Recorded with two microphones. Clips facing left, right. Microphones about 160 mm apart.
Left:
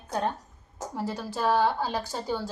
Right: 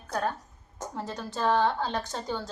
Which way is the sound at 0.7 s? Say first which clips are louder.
Left 3 dB; 10° left (ahead or behind).